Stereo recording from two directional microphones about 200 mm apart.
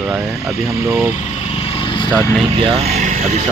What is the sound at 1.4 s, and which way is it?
Vehicle, 30° left (ahead or behind).